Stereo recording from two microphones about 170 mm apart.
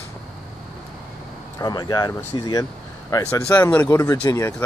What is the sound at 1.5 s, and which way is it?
Speech, 25° left (ahead or behind).